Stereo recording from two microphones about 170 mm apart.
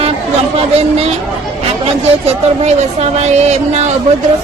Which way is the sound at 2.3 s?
40° right (ahead or behind).